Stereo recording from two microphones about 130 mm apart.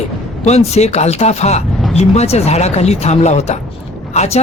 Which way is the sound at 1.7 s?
Centre (ahead or behind).